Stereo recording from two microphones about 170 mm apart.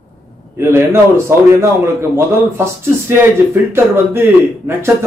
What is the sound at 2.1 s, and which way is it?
Speech, 15° right (ahead or behind).